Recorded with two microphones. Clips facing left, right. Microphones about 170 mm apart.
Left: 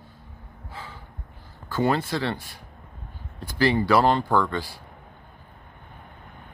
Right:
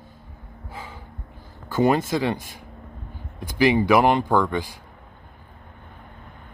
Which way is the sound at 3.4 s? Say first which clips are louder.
Right 3 dB; 15° right (ahead or behind).